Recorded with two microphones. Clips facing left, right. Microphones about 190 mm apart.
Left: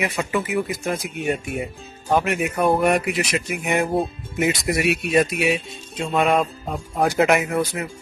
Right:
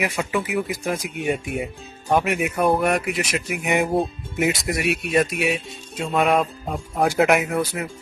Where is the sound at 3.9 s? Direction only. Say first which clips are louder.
Even; centre (ahead or behind).